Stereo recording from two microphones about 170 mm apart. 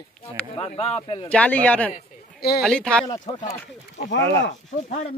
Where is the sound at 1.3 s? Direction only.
10° left (ahead or behind).